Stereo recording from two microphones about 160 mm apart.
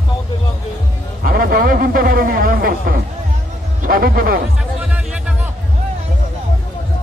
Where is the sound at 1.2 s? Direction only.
70° right (ahead or behind).